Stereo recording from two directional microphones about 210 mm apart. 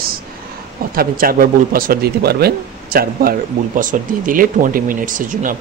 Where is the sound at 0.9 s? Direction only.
40° right (ahead or behind).